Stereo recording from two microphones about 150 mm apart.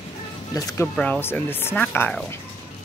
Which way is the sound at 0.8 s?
10° left (ahead or behind).